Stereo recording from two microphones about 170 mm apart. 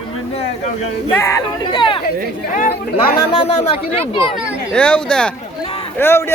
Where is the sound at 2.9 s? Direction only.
35° left (ahead or behind).